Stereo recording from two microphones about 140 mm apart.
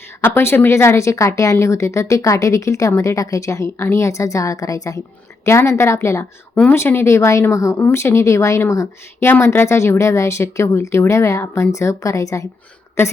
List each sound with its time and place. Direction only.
0.2 s speech: 15° left (ahead or behind)